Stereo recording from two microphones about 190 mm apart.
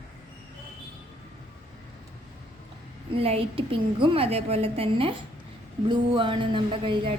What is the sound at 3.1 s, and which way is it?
A woman's voice, 30° right (ahead or behind).